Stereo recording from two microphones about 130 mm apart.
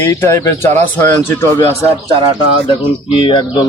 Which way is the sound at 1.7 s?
40° right (ahead or behind).